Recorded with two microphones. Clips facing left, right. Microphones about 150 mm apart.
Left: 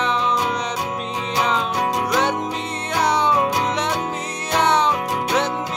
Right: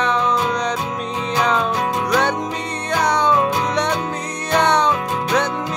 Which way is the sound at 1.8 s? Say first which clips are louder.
Right 1 dB; 20° left (ahead or behind).